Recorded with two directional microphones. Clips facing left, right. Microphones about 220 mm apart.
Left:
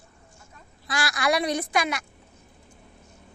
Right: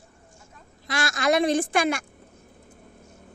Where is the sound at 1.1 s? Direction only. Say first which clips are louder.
Right 4 dB; 45° right (ahead or behind).